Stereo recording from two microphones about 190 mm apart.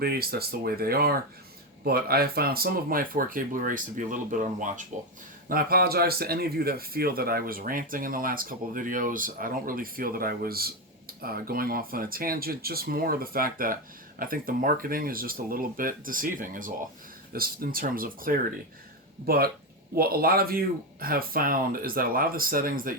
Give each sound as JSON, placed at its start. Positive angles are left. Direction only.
{"t": 0.0, "sound": "speech", "side_deg": -55}